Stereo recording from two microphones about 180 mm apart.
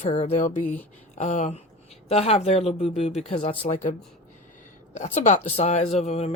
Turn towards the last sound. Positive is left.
turn(degrees=35)  # may be behind; listen again after turning